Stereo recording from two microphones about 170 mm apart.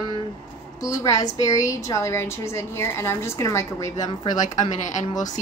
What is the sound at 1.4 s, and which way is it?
A woman's voice, 20° left (ahead or behind).